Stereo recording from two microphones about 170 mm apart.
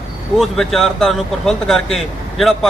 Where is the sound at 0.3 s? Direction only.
Centre (ahead or behind).